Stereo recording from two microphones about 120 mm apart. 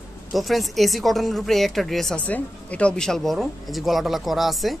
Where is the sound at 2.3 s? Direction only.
10° left (ahead or behind).